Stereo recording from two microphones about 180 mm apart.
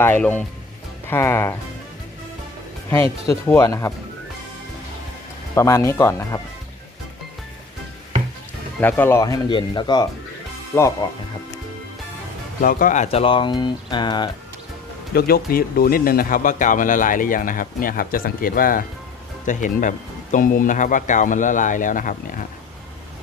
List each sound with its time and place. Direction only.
0.0 s speech: 10° left (ahead or behind)
2.9 s speech: 15° left (ahead or behind)
5.5 s speech: 15° left (ahead or behind)
8.8 s speech: 10° left (ahead or behind)
12.6 s speech: 50° left (ahead or behind); by 14.3 s 25° left (ahead or behind)
15.1 s speech: 55° left (ahead or behind)